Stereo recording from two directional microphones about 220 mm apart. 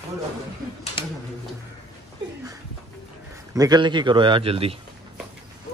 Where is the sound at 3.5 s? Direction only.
20° right (ahead or behind).